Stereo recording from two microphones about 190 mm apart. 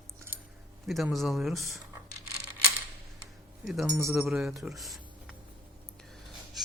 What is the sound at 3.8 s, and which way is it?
Speech, 15° right (ahead or behind).